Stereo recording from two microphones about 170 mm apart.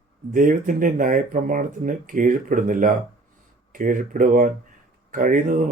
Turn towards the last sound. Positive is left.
turn(degrees=-50)  # may be behind; listen again after turning